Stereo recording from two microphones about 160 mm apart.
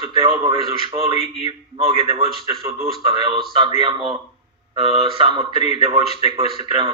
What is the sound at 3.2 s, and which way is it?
Speech, 30° right (ahead or behind).